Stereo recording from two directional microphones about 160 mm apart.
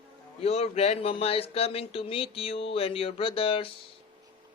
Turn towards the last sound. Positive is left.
turn(degrees=35)  # may be behind; listen again after turning